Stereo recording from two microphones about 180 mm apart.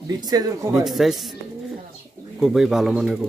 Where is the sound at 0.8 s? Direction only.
Centre (ahead or behind).